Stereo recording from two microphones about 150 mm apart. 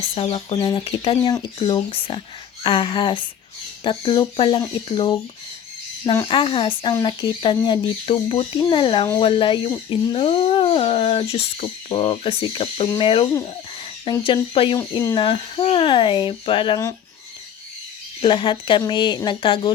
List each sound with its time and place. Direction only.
0.1 s speech: 40° left (ahead or behind)
2.6 s speech: 30° left (ahead or behind)
6.2 s speech: 35° left (ahead or behind)
18.2 s speech: 35° left (ahead or behind)